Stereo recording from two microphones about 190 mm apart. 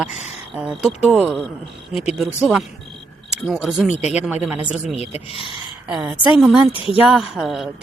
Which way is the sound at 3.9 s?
35° left (ahead or behind).